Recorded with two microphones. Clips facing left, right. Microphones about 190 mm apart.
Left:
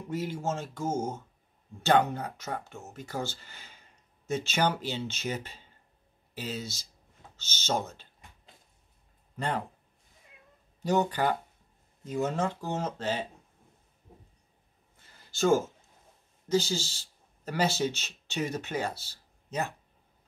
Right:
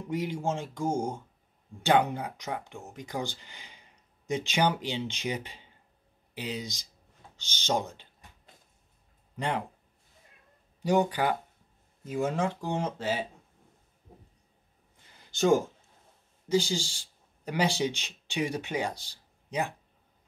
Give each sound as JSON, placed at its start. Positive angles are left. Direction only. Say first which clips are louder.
{"t": 0.1, "sound": "speech", "louder": "right 1 dB", "side_deg": -15}
{"t": 9.4, "sound": "speech", "louder": "right 1 dB", "side_deg": -15}
{"t": 10.8, "sound": "speech", "louder": "right 1 dB", "side_deg": -10}
{"t": 15.3, "sound": "speech", "louder": "right 1 dB", "side_deg": -15}